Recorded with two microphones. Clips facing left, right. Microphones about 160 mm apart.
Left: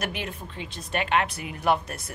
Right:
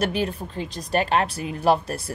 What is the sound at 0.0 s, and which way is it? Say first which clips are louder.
Speech: right 8 dB; 35° right (ahead or behind).